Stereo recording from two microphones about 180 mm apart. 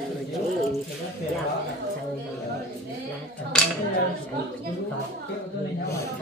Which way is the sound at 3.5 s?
5° left (ahead or behind).